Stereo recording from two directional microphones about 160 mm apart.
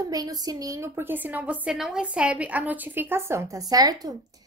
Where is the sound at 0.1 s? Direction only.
25° right (ahead or behind).